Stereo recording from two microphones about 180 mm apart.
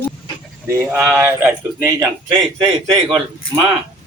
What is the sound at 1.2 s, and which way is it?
A man's voice, 15° right (ahead or behind).